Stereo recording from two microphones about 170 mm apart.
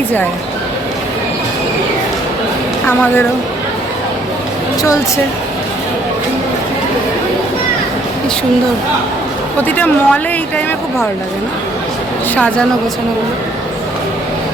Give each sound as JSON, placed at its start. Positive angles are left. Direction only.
{"t": 4.8, "sound": "speech", "side_deg": 20}
{"t": 9.6, "sound": "a woman's voice", "side_deg": 10}